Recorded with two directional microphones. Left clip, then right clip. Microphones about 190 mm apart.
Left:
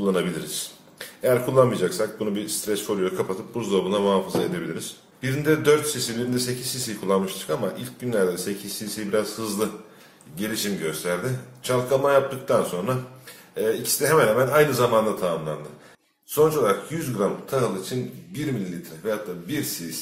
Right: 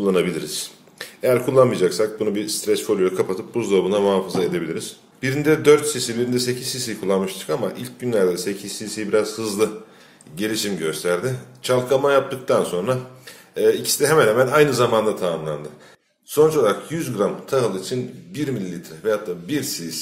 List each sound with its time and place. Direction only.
0.0 s a man's voice: 30° right (ahead or behind)